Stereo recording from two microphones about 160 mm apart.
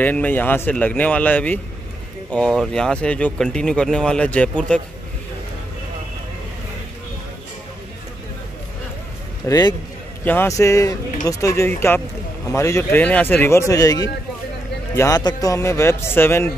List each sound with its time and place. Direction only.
0.0 s speech: 10° left (ahead or behind)
9.5 s a man's voice: 25° left (ahead or behind)
10.2 s a man's voice: 15° left (ahead or behind)